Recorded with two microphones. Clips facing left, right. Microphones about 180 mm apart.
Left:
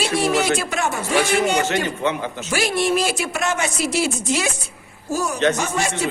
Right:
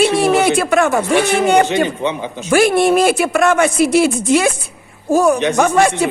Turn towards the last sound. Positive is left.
turn(degrees=-60)  # may be behind; listen again after turning